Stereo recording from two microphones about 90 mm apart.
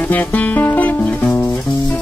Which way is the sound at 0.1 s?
20° left (ahead or behind).